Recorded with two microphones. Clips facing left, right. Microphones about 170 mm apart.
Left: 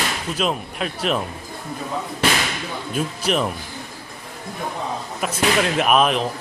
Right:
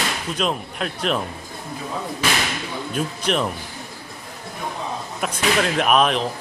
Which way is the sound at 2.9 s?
5° left (ahead or behind).